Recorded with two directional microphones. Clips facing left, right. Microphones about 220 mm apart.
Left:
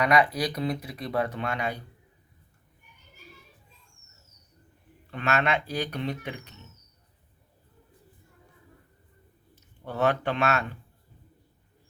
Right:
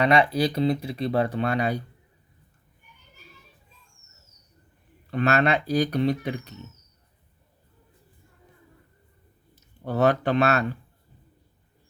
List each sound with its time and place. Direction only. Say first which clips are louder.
0.0 s speech: right 3 dB; 25° right (ahead or behind)
5.1 s speech: right 5 dB; 35° right (ahead or behind)
9.8 s speech: right 4 dB; 40° right (ahead or behind)